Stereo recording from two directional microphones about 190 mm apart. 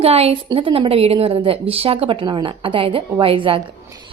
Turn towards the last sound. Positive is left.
turn(degrees=-30)  # may be behind; listen again after turning